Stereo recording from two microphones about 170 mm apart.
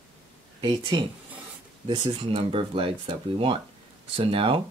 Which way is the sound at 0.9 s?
25° right (ahead or behind).